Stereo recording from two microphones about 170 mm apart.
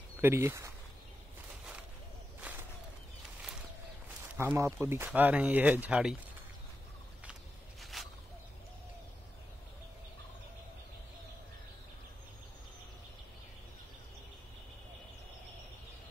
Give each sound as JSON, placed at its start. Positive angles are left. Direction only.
{"t": 0.2, "sound": "speech", "side_deg": -15}
{"t": 4.4, "sound": "speech", "side_deg": -15}
{"t": 7.8, "sound": "a sound", "side_deg": 0}